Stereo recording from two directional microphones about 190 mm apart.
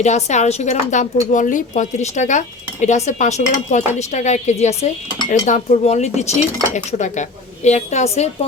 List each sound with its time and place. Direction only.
0.0 s a woman's voice: 35° left (ahead or behind)